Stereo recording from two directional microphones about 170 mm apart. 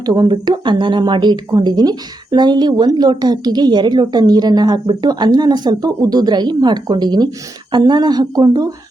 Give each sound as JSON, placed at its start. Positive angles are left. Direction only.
{"t": 0.0, "sound": "speech", "side_deg": -25}